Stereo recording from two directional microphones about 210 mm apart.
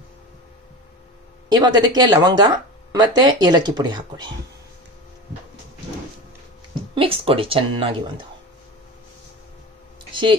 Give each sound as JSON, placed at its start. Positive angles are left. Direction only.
{"t": 1.5, "sound": "speech", "side_deg": -20}
{"t": 7.0, "sound": "speech", "side_deg": -25}